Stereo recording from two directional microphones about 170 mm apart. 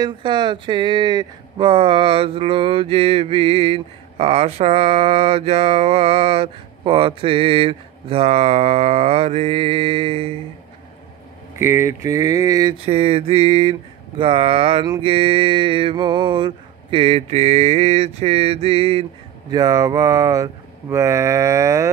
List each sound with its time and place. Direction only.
0.0 s speech: 25° right (ahead or behind)
11.5 s speech: 15° right (ahead or behind)
12.8 s speech: 35° right (ahead or behind)
19.5 s speech: 20° right (ahead or behind)
20.9 s a sound: 15° right (ahead or behind)